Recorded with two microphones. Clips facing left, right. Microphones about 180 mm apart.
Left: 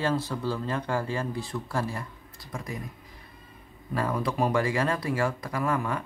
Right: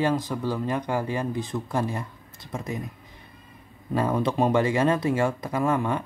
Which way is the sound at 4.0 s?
25° right (ahead or behind).